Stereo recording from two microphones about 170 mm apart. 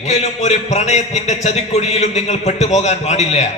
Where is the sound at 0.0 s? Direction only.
45° left (ahead or behind).